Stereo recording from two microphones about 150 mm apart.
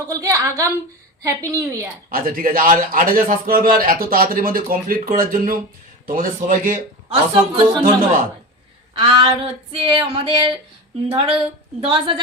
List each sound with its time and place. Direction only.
0.1 s a woman's voice: 20° right (ahead or behind)
2.0 s a man's voice: 70° right (ahead or behind)
7.1 s female singing: 35° right (ahead or behind)
9.0 s female singing: 35° right (ahead or behind)